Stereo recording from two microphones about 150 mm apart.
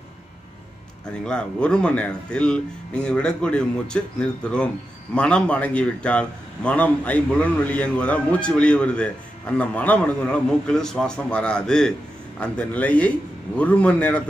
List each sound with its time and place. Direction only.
1.2 s a man's voice: 5° left (ahead or behind)